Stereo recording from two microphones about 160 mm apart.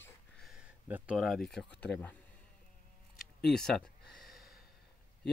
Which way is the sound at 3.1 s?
5° left (ahead or behind).